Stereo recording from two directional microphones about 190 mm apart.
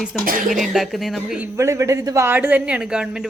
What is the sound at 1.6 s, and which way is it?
Speech, 15° right (ahead or behind).